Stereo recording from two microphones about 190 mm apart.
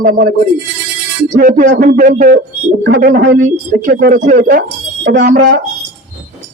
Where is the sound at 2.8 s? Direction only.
55° right (ahead or behind).